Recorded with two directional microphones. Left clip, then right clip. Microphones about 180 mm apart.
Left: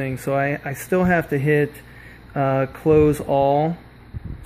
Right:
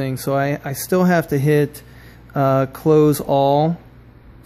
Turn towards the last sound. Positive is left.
turn(degrees=-30)  # may be behind; listen again after turning